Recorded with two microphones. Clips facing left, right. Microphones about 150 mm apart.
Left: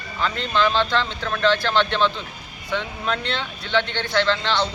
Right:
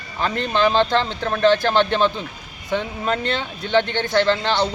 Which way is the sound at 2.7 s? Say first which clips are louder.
Right 3 dB; 45° right (ahead or behind).